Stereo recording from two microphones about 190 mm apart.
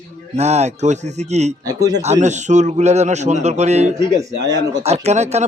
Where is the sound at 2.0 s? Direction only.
40° right (ahead or behind).